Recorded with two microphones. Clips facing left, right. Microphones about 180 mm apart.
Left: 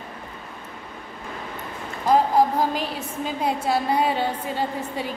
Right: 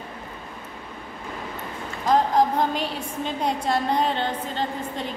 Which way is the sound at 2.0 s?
5° left (ahead or behind).